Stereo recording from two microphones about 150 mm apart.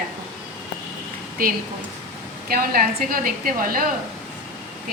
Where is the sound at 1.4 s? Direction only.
75° right (ahead or behind).